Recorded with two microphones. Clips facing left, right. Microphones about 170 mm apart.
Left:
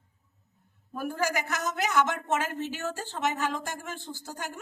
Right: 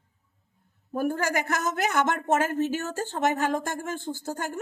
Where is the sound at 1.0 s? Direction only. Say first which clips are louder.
Right 4 dB; 55° right (ahead or behind).